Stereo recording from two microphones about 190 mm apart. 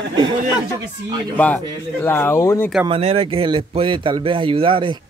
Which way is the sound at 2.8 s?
30° right (ahead or behind).